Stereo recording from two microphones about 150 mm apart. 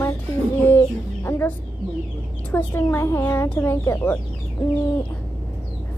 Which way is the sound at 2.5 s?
15° left (ahead or behind).